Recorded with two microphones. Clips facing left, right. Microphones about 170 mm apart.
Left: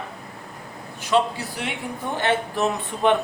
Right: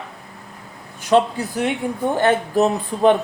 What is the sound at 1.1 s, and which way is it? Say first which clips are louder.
A man's voice: right 5 dB; 50° right (ahead or behind).